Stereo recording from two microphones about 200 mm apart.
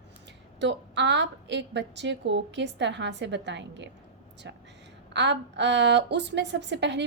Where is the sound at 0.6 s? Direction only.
60° right (ahead or behind).